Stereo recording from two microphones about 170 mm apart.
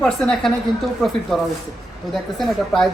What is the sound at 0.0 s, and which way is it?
Speech, 5° left (ahead or behind).